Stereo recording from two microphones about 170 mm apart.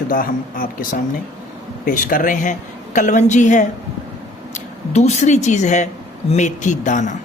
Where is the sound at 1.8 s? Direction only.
50° left (ahead or behind).